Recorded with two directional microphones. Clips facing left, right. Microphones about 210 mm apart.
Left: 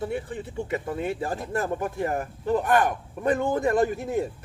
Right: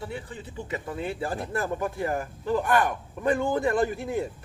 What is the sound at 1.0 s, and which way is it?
Speech, 45° left (ahead or behind).